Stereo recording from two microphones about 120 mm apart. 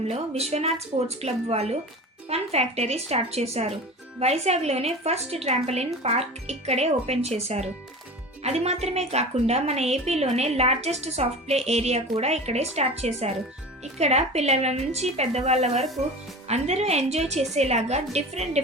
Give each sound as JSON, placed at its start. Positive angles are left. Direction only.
{"t": 0.1, "sound": "a woman's voice", "side_deg": -60}